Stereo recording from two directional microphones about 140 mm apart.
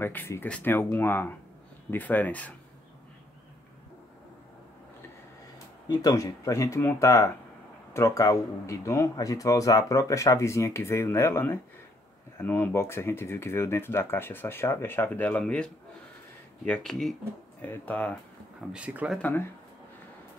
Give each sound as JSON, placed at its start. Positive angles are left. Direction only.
{"t": 0.0, "sound": "speech", "side_deg": 15}
{"t": 5.9, "sound": "speech", "side_deg": 25}
{"t": 18.7, "sound": "speech", "side_deg": -5}